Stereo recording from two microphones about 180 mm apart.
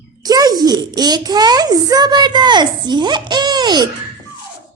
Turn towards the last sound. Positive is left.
turn(degrees=-25)  # may be behind; listen again after turning